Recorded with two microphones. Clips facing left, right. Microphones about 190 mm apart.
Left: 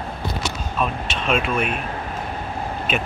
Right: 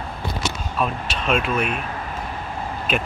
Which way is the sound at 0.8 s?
Centre (ahead or behind).